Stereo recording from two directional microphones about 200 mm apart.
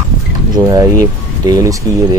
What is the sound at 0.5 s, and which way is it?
Speech, 20° right (ahead or behind).